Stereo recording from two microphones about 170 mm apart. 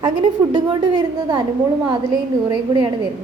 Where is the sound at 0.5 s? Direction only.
25° right (ahead or behind).